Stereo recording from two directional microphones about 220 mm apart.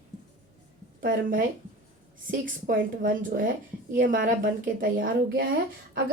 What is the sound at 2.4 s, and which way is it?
Speech, 40° right (ahead or behind).